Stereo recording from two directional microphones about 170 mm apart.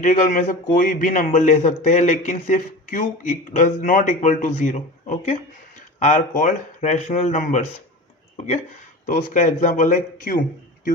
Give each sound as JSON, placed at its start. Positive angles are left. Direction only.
{"t": 0.0, "sound": "a man's voice", "side_deg": 50}
{"t": 9.0, "sound": "a man's voice", "side_deg": 45}